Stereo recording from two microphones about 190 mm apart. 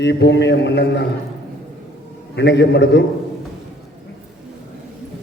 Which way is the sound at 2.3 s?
65° left (ahead or behind).